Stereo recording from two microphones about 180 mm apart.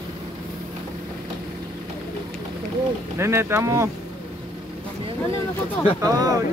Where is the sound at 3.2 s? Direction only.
15° right (ahead or behind).